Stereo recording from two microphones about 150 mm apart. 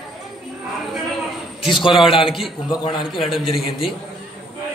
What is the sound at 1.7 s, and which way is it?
Speech, 35° left (ahead or behind).